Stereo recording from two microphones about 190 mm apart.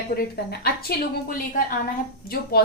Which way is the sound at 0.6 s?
50° left (ahead or behind).